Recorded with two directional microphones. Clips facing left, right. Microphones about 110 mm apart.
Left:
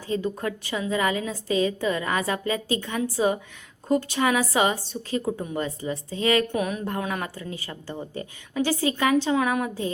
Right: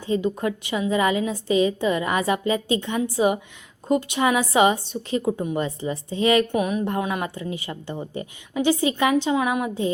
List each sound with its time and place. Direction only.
0.1 s a woman's voice: 20° right (ahead or behind)
6.6 s a woman's voice: 10° right (ahead or behind)